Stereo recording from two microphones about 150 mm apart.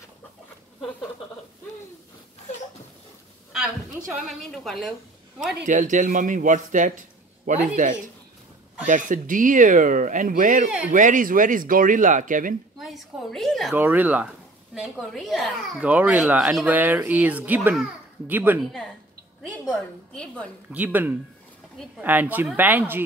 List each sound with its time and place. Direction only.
4.4 s a woman's voice: centre (ahead or behind)
5.7 s a man's voice: 60° right (ahead or behind)
8.8 s a man's voice: 60° right (ahead or behind)
12.7 s a sound: centre (ahead or behind)
13.7 s a woman's voice: 10° right (ahead or behind)
18.6 s a woman's voice: centre (ahead or behind)
20.7 s a woman's voice: 10° right (ahead or behind)